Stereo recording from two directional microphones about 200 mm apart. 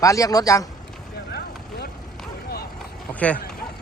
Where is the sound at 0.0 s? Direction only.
15° left (ahead or behind).